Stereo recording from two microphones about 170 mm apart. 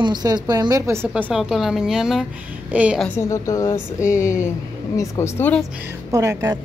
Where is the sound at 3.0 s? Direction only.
15° left (ahead or behind).